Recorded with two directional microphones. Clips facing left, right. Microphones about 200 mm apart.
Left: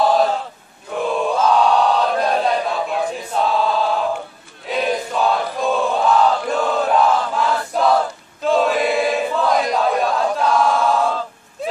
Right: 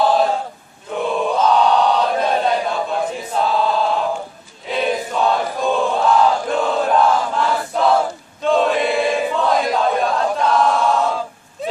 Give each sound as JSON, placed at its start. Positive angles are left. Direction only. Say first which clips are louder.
{"t": 0.0, "sound": "chant", "louder": "even", "side_deg": 0}
{"t": 4.6, "sound": "crowd", "louder": "even", "side_deg": 0}